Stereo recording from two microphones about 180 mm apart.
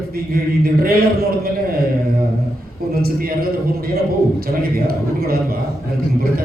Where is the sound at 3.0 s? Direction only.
55° right (ahead or behind).